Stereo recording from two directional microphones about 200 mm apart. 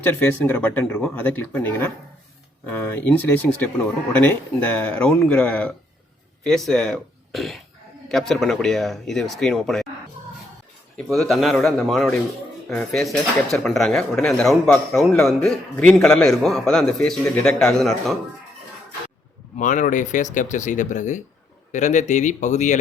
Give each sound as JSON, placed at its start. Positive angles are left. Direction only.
{"t": 0.0, "sound": "a man's voice", "side_deg": 10}
{"t": 10.9, "sound": "a man's voice", "side_deg": 0}
{"t": 19.5, "sound": "speech", "side_deg": 40}